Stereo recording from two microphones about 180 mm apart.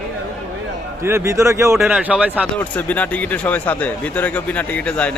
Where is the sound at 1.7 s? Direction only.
5° right (ahead or behind).